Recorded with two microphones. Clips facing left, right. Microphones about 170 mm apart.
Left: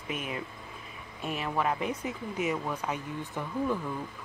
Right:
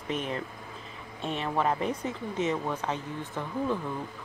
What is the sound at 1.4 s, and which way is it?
Speech, 5° left (ahead or behind).